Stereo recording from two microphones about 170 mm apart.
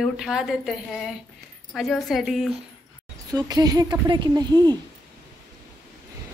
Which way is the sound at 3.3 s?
20° right (ahead or behind).